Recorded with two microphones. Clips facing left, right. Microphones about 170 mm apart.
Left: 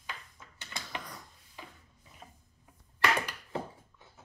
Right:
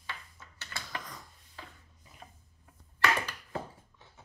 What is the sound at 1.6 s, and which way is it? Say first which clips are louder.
Rub: even; 15° left (ahead or behind).